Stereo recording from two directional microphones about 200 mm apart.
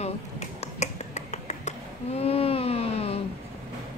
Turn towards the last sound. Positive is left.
turn(degrees=30)  # may be behind; listen again after turning